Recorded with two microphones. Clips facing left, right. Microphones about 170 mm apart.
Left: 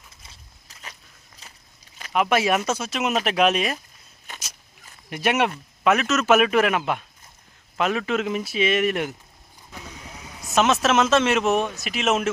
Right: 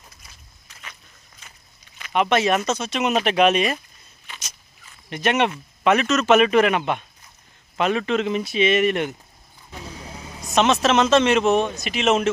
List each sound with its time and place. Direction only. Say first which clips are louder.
0.2 s walk: left 1 dB; 30° left (ahead or behind)
2.1 s speech: right 1 dB; 5° left (ahead or behind)
4.3 s a sound: left 1 dB; 45° left (ahead or behind)
5.0 s speech: right 1 dB; 10° left (ahead or behind)
9.8 s vehicle: right 6 dB; 30° right (ahead or behind)
10.4 s speech: right 2 dB; 5° left (ahead or behind)